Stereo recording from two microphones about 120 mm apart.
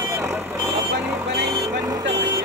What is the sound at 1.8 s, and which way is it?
Vehicle, 30° right (ahead or behind).